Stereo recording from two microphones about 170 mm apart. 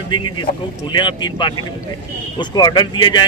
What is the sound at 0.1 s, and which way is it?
Speech, 30° left (ahead or behind).